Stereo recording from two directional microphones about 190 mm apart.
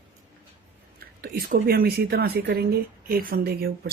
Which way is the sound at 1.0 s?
55° right (ahead or behind).